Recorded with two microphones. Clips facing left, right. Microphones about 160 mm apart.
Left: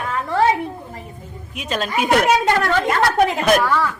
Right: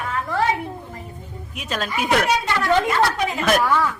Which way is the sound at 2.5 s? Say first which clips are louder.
Left 2 dB; 50° left (ahead or behind).